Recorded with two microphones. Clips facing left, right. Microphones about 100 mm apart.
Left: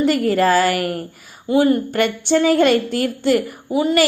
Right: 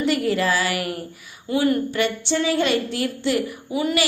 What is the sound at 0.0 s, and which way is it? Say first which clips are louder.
Speech: left 5 dB; 40° left (ahead or behind).